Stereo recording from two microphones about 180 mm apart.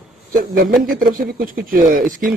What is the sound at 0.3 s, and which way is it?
Speech, 50° right (ahead or behind).